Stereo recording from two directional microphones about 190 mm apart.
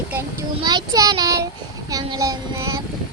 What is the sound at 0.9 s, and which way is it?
Child singing, 20° right (ahead or behind).